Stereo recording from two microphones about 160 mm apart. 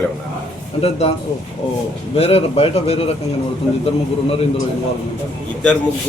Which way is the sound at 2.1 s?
40° left (ahead or behind).